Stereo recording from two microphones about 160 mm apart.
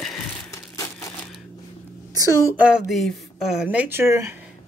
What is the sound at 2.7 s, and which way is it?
Speech, centre (ahead or behind).